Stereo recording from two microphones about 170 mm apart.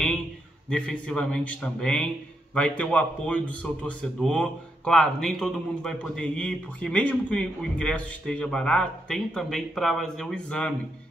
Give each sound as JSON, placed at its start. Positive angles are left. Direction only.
{"t": 0.7, "sound": "a man's voice", "side_deg": 5}